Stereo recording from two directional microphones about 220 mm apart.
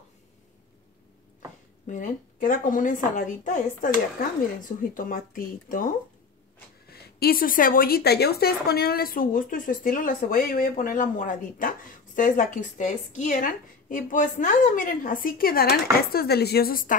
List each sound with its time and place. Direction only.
1.9 s a woman's voice: 35° left (ahead or behind)